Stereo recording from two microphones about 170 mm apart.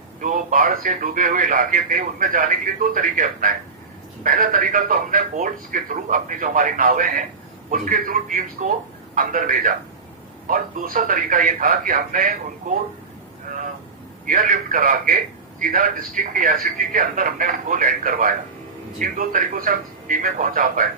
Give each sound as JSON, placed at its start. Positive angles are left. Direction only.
{"t": 0.2, "sound": "a man's voice", "side_deg": -50}
{"t": 14.3, "sound": "a man's voice", "side_deg": -55}